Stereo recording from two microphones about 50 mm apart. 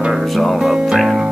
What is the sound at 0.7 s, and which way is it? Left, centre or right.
Music, centre.